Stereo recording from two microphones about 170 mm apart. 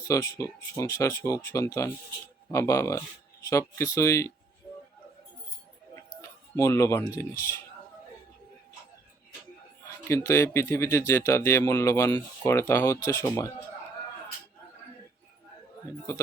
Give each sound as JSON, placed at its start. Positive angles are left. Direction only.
{"t": 0.1, "sound": "speech", "side_deg": 20}
{"t": 6.2, "sound": "speech", "side_deg": 15}
{"t": 10.0, "sound": "speech", "side_deg": 15}